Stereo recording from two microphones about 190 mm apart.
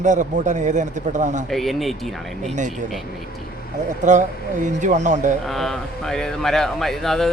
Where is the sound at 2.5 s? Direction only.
40° right (ahead or behind).